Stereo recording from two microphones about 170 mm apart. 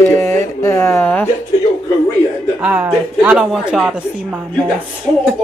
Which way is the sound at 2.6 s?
10° right (ahead or behind).